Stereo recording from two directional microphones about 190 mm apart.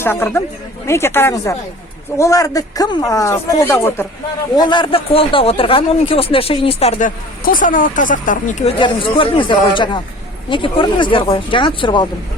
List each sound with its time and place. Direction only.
0.0 s speech: 10° left (ahead or behind)
4.5 s speech: 25° left (ahead or behind)
7.4 s speech: 45° left (ahead or behind)
8.8 s speech: 25° left (ahead or behind)